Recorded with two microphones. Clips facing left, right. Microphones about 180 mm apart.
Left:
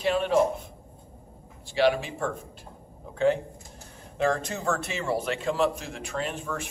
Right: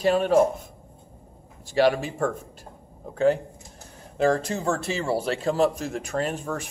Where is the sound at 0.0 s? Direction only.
40° right (ahead or behind).